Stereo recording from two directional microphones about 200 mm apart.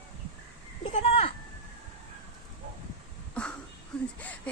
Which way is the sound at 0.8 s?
35° left (ahead or behind).